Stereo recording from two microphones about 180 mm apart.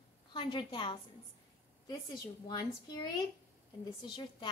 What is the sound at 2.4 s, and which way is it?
Speech, 20° left (ahead or behind).